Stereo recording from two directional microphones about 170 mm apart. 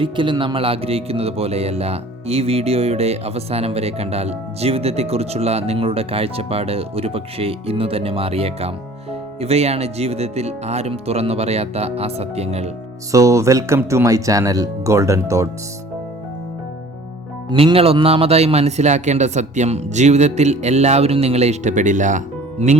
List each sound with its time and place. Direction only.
0.0 s speech: 30° right (ahead or behind)
13.1 s speech: 20° right (ahead or behind)
17.5 s speech: 30° right (ahead or behind)